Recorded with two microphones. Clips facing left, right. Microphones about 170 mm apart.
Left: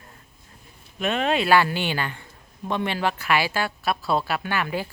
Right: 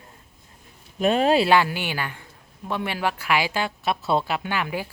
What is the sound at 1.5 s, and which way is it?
Speech, 15° right (ahead or behind).